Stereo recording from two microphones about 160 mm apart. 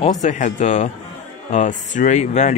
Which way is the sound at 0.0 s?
45° left (ahead or behind).